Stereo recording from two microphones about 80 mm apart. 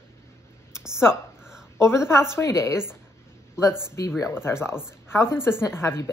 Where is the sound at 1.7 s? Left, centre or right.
Left.